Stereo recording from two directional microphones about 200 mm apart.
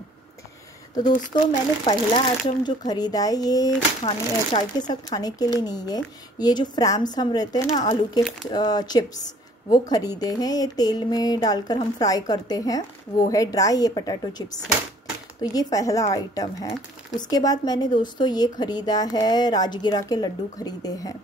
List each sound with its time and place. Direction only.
0.9 s a woman's voice: 20° left (ahead or behind)
15.5 s a woman's voice: 15° left (ahead or behind)